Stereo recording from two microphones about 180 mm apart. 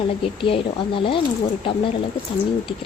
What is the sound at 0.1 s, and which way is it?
Speech, 30° left (ahead or behind).